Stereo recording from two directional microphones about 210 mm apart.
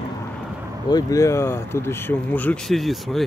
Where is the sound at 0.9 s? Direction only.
15° left (ahead or behind); by 3.2 s centre (ahead or behind).